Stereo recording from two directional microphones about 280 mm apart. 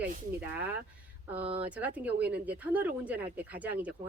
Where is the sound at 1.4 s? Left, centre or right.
Centre.